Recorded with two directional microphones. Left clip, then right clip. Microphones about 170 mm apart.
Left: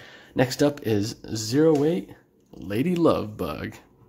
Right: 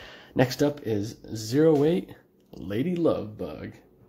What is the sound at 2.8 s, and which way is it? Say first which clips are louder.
Speech: left 4 dB; 25° left (ahead or behind).